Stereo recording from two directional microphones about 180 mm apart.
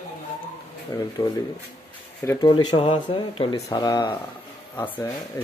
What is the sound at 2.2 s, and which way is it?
Speech, 20° left (ahead or behind).